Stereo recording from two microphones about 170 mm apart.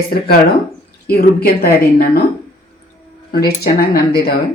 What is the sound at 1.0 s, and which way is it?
Speech, 65° left (ahead or behind).